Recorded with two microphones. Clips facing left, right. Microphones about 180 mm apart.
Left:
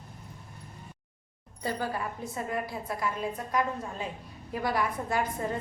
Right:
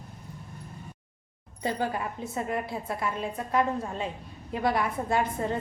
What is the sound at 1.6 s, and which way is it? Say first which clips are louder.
A woman's voice: right 3 dB; 20° right (ahead or behind).